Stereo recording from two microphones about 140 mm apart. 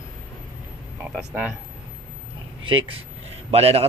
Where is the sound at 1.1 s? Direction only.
10° right (ahead or behind).